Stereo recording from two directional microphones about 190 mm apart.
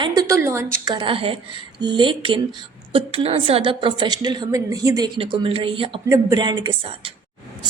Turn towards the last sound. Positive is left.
turn(degrees=-25)  # may be behind; listen again after turning